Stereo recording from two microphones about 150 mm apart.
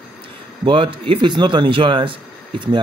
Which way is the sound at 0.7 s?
35° right (ahead or behind).